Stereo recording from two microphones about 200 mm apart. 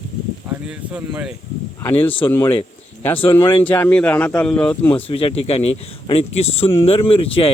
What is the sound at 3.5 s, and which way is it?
Speech, 10° left (ahead or behind).